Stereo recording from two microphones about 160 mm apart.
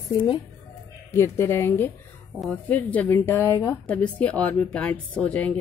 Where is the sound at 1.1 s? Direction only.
15° left (ahead or behind).